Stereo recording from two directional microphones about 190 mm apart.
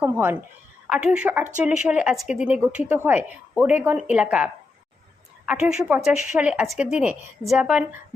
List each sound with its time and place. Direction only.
0.0 s speech: 10° right (ahead or behind)
5.5 s speech: 5° right (ahead or behind)